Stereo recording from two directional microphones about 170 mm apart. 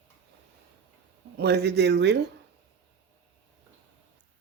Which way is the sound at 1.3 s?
75° right (ahead or behind).